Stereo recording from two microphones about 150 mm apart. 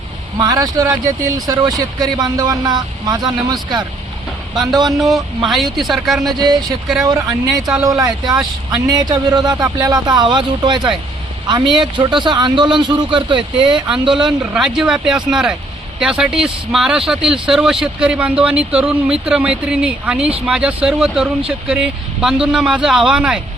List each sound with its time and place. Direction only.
0.3 s speech: 25° right (ahead or behind)
4.5 s a man's voice: centre (ahead or behind)
6.4 s a man's voice: 25° right (ahead or behind)
14.1 s a man's voice: 5° right (ahead or behind)